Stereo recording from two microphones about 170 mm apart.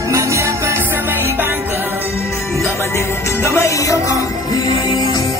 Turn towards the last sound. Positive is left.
turn(degrees=20)  # may be behind; listen again after turning